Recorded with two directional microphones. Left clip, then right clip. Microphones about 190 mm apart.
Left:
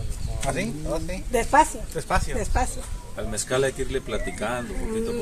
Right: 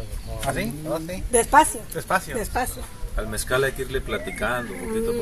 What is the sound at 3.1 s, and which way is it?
Speech, 10° left (ahead or behind).